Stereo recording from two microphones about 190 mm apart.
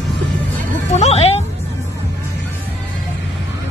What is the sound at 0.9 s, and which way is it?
Music, 35° left (ahead or behind).